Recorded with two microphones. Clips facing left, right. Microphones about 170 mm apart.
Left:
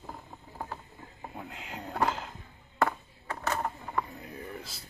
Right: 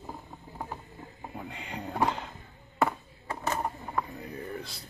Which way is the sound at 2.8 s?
15° right (ahead or behind).